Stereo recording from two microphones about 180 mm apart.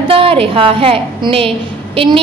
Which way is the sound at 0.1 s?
30° right (ahead or behind).